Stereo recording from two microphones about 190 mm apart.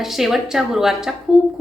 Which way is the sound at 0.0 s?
Centre (ahead or behind).